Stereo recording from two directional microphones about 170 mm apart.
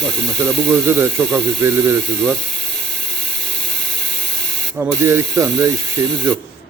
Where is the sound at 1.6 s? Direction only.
15° right (ahead or behind).